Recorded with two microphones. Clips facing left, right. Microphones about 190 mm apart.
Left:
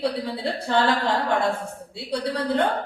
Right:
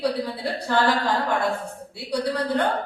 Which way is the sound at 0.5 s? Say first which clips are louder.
Even; 25° left (ahead or behind).